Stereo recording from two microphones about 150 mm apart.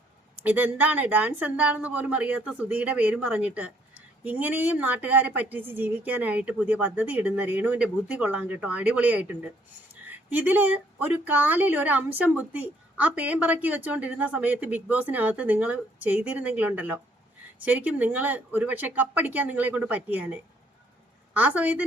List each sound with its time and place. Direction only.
0.4 s speech: 10° right (ahead or behind)